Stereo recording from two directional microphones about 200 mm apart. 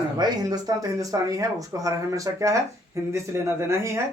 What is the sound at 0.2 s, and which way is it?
Speech, 20° right (ahead or behind).